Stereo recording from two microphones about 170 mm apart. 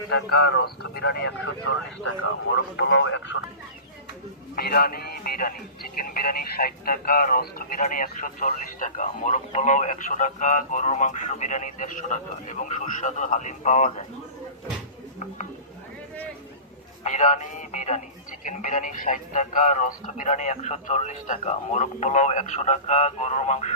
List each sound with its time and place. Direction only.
0.3 s speech: 75° left (ahead or behind)
2.7 s a man's voice: 90° left
4.5 s a man's voice: 65° left (ahead or behind); by 14.1 s 45° left (ahead or behind)
17.0 s a man's voice: 45° left (ahead or behind)